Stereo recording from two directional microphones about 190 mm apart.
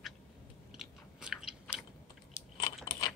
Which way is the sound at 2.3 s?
20° left (ahead or behind).